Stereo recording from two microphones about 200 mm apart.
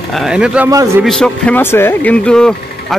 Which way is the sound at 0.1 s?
5° right (ahead or behind).